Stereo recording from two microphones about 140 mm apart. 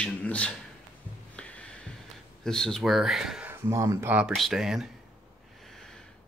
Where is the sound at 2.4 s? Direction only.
5° left (ahead or behind).